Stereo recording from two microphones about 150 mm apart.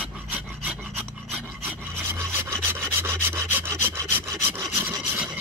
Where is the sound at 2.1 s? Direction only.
15° right (ahead or behind).